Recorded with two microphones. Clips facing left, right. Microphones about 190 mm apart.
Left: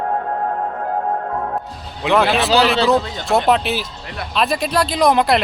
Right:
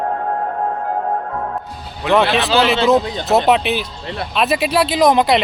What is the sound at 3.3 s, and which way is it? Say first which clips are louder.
Speech: right 2 dB; centre (ahead or behind).